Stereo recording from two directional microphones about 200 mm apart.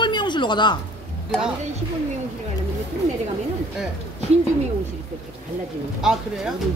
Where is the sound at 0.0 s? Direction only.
20° left (ahead or behind).